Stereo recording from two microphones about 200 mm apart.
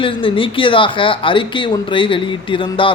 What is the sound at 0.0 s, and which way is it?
Speech, 25° left (ahead or behind).